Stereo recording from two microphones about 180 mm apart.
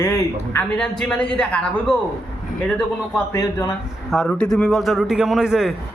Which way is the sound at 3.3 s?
20° left (ahead or behind).